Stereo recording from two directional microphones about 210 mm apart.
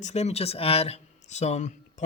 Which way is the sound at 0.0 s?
30° left (ahead or behind).